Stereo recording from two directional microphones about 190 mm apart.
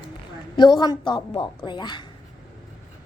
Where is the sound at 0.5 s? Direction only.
25° left (ahead or behind).